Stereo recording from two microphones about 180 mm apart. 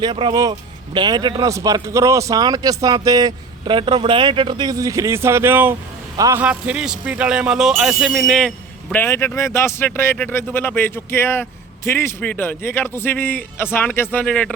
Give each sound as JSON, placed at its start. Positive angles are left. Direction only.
{"t": 0.0, "sound": "speech", "side_deg": -25}
{"t": 6.4, "sound": "speech", "side_deg": -5}